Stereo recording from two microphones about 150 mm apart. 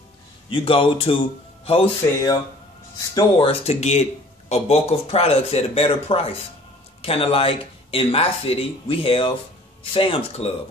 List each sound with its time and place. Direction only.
0.5 s speech: 35° left (ahead or behind)
3.2 s speech: 35° left (ahead or behind)